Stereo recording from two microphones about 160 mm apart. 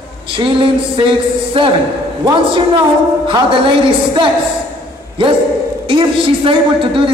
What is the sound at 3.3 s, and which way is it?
Speech, 30° right (ahead or behind).